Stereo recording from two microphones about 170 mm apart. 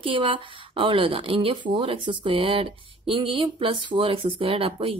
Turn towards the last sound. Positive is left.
turn(degrees=-35)  # may be behind; listen again after turning